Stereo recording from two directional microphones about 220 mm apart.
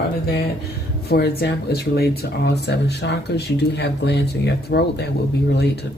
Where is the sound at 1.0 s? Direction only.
45° left (ahead or behind).